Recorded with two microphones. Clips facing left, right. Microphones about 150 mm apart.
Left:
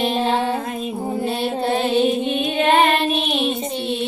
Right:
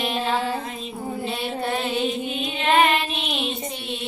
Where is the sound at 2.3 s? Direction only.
60° left (ahead or behind).